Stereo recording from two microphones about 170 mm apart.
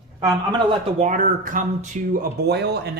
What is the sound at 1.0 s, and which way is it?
Speech, 50° right (ahead or behind).